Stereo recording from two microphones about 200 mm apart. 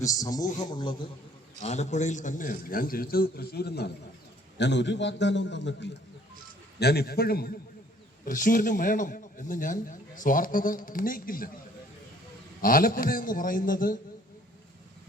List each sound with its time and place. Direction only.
0.0 s a man's voice: 15° left (ahead or behind)
0.4 s a man's voice: 40° left (ahead or behind)
0.7 s a man's voice: 25° left (ahead or behind)
1.6 s a man's voice: 35° left (ahead or behind)
12.6 s a man's voice: 45° left (ahead or behind)